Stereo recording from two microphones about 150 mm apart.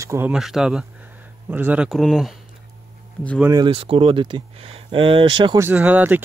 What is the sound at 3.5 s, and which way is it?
Speech, 35° right (ahead or behind).